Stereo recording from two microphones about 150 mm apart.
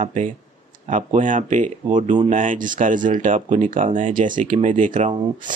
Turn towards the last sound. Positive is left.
turn(degrees=-60)  # may be behind; listen again after turning